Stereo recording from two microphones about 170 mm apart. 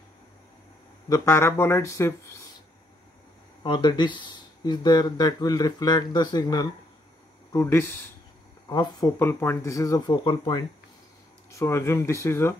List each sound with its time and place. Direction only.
1.0 s speech: 20° left (ahead or behind)
3.6 s speech: 25° left (ahead or behind)
9.2 s speech: 15° left (ahead or behind)